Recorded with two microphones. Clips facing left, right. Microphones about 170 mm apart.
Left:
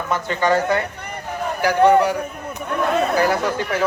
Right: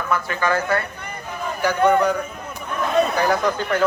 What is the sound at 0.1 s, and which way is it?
Speech, 25° left (ahead or behind).